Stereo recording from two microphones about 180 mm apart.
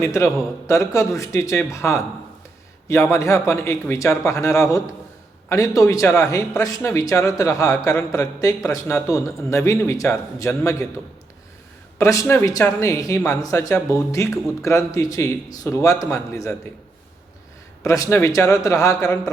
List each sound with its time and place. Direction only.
0.0 s a man's voice: 15° left (ahead or behind)
11.9 s a man's voice: 15° left (ahead or behind)
17.8 s a man's voice: 15° left (ahead or behind)